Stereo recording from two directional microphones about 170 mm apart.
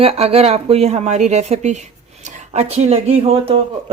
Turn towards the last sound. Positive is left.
turn(degrees=-35)  # may be behind; listen again after turning